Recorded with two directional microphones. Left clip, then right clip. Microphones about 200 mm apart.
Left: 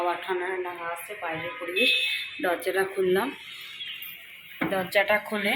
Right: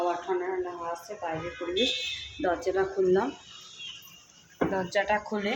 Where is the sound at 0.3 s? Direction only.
5° right (ahead or behind).